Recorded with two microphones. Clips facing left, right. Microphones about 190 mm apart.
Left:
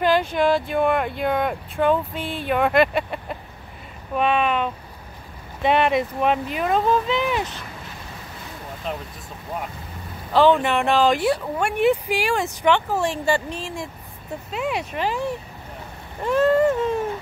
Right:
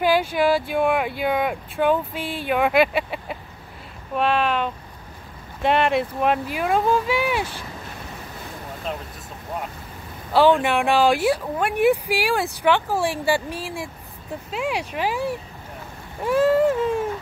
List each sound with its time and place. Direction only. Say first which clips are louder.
0.0 s speech: even; 5° right (ahead or behind)
10.3 s speech: even; 10° right (ahead or behind)